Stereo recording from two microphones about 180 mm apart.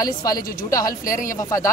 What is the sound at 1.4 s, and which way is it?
Speech, 20° left (ahead or behind).